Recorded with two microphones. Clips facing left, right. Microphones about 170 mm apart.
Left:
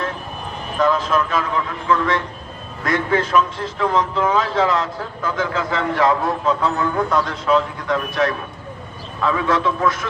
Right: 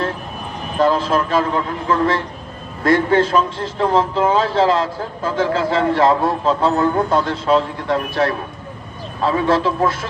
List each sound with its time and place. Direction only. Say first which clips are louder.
0.8 s a man's voice: right 2 dB; 30° right (ahead or behind)